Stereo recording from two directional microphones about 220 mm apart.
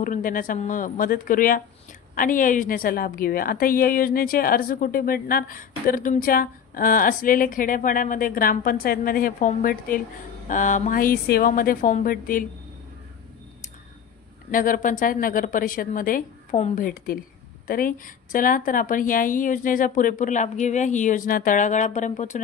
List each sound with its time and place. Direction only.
0.0 s a woman's voice: 40° left (ahead or behind)
14.5 s a woman's voice: 40° left (ahead or behind)